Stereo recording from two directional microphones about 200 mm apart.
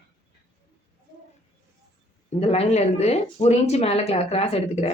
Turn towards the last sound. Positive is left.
turn(degrees=30)  # may be behind; listen again after turning